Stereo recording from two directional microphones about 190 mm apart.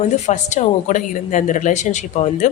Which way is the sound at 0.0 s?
40° left (ahead or behind).